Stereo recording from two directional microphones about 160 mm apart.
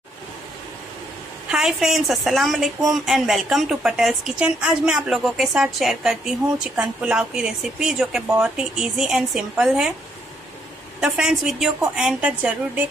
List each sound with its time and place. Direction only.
1.5 s a woman's voice: centre (ahead or behind)
11.0 s a woman's voice: 5° right (ahead or behind)